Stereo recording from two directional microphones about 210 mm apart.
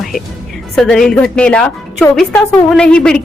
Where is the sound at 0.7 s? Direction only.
Centre (ahead or behind).